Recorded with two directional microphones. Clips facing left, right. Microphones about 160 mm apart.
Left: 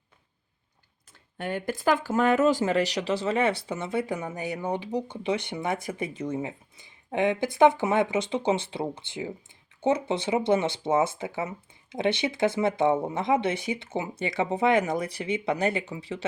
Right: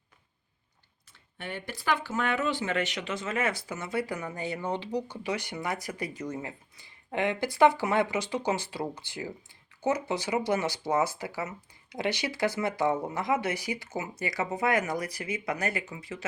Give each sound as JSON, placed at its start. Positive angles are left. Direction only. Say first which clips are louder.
{"t": 1.1, "sound": "speech", "louder": "left 7 dB", "side_deg": 45}